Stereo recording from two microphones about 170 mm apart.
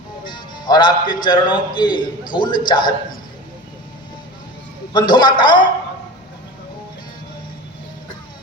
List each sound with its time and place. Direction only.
0.3 s music: 25° left (ahead or behind)
1.2 s a man's voice: 25° left (ahead or behind)
4.9 s a man's voice: 25° left (ahead or behind)